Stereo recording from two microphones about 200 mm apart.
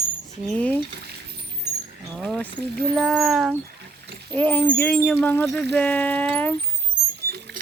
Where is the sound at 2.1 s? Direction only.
Centre (ahead or behind).